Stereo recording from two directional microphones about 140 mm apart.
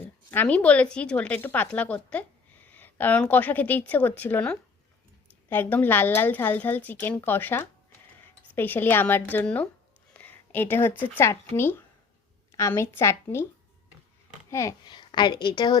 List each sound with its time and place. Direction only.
0.0 s a woman's voice: 15° left (ahead or behind)
10.2 s a sound: 15° left (ahead or behind)
11.0 s a woman's voice: 15° left (ahead or behind)
14.5 s a woman's voice: 20° left (ahead or behind)
14.8 s a woman's voice: 30° left (ahead or behind)